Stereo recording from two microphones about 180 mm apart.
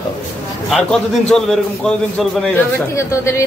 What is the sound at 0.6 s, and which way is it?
A man's voice, 5° left (ahead or behind).